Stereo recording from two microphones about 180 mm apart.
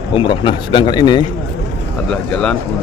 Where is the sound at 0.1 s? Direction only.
30° left (ahead or behind).